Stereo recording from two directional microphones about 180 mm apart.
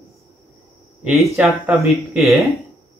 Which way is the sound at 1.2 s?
10° right (ahead or behind).